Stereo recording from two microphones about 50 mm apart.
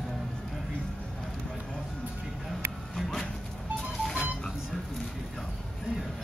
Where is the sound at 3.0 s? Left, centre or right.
Centre.